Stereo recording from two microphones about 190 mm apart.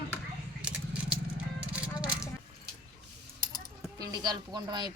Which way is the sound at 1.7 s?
5° right (ahead or behind).